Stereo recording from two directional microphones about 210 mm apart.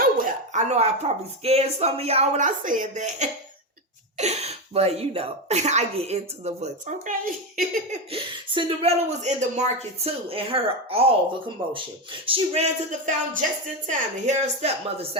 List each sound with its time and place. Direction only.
0.0 s a sound: 40° right (ahead or behind)
1.5 s speech: 30° right (ahead or behind)
8.1 s a woman's voice: 25° right (ahead or behind)